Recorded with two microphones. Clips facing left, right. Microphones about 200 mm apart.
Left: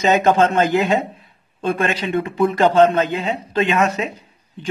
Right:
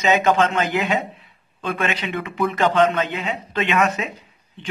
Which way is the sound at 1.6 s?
30° left (ahead or behind).